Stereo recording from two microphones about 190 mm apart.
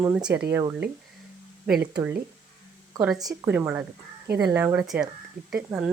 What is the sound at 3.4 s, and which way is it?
Speech, 10° right (ahead or behind).